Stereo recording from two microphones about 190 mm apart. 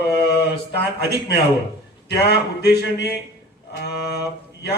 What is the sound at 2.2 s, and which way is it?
Speech, 60° left (ahead or behind).